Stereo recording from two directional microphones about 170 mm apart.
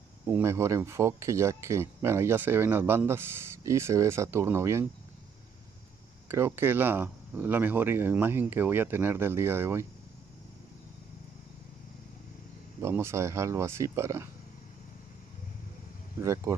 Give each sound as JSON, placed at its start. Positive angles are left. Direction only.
{"t": 0.3, "sound": "speech", "side_deg": -15}
{"t": 6.2, "sound": "speech", "side_deg": -15}
{"t": 12.8, "sound": "speech", "side_deg": -15}
{"t": 16.2, "sound": "speech", "side_deg": -20}